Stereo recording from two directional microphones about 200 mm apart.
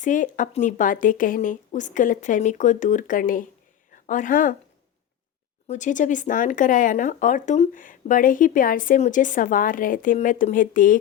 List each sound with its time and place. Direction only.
0.0 s speech: 40° left (ahead or behind)
5.6 s speech: 40° left (ahead or behind)